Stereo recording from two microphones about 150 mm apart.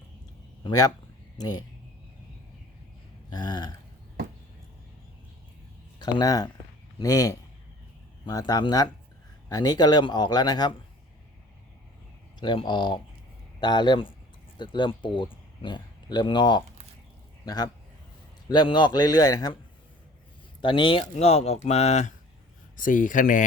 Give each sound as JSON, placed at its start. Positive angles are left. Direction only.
{"t": 0.6, "sound": "speech", "side_deg": 25}
{"t": 3.3, "sound": "speech", "side_deg": 30}
{"t": 6.0, "sound": "speech", "side_deg": 30}
{"t": 12.4, "sound": "a man's voice", "side_deg": 30}
{"t": 20.6, "sound": "speech", "side_deg": 35}
{"t": 22.8, "sound": "speech", "side_deg": 65}